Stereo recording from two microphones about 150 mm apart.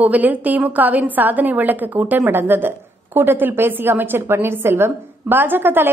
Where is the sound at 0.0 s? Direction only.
10° right (ahead or behind).